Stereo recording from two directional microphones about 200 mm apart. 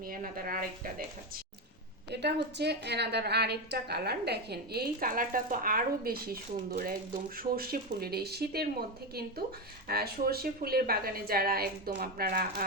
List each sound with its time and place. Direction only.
0.0 s a woman's voice: 45° right (ahead or behind)
2.0 s a woman's voice: 55° right (ahead or behind)
9.8 s a woman's voice: 50° right (ahead or behind)